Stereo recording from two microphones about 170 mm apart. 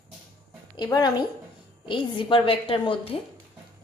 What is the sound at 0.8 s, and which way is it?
A woman's voice, 25° left (ahead or behind).